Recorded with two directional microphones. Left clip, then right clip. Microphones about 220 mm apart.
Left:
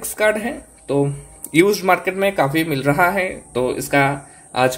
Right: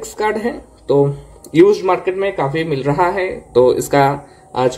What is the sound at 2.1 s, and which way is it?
Speech, 35° left (ahead or behind).